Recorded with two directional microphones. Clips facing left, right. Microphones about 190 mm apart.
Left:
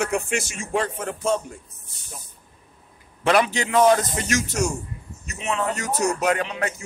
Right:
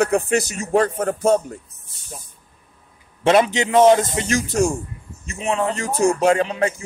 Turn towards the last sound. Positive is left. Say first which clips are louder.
# right 6 dB
turn(degrees=-30)  # may be behind; listen again after turning